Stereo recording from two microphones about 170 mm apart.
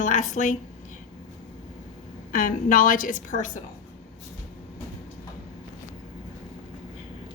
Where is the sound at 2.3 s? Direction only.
55° left (ahead or behind).